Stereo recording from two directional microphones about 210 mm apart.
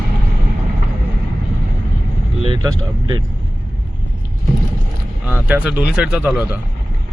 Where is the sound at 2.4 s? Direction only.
25° right (ahead or behind).